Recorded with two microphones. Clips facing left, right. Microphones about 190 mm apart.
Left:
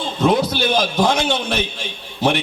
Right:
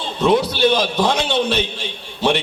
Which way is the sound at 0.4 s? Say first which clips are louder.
Right 2 dB; 30° right (ahead or behind).